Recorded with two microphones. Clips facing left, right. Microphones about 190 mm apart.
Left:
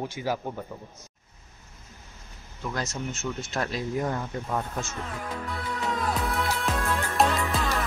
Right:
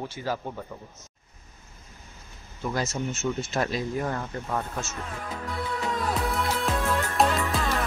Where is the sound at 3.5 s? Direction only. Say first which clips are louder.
Left 2 dB; centre (ahead or behind).